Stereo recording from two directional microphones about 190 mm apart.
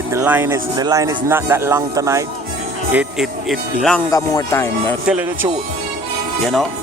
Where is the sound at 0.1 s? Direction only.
10° right (ahead or behind).